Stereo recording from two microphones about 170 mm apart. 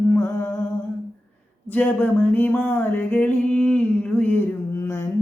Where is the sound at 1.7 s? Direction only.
10° left (ahead or behind).